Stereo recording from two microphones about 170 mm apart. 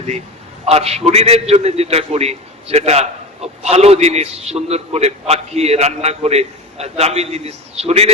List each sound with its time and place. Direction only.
0.6 s a man's voice: 35° right (ahead or behind)